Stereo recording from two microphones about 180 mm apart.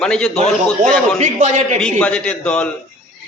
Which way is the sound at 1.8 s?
5° left (ahead or behind).